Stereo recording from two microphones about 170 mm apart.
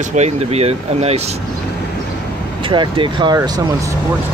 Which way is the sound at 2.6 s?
30° right (ahead or behind).